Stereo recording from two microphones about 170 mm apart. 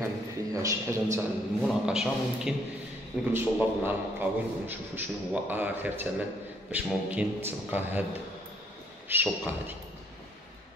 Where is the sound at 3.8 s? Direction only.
10° right (ahead or behind).